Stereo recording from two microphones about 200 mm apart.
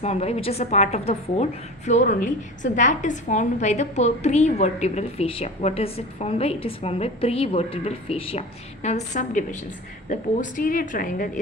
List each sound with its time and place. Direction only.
0.0 s a woman's voice: 30° left (ahead or behind)